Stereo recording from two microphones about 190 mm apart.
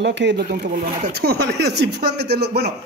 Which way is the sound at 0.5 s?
55° right (ahead or behind).